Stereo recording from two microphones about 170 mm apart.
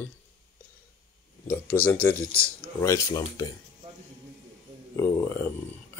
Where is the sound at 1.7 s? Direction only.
10° left (ahead or behind).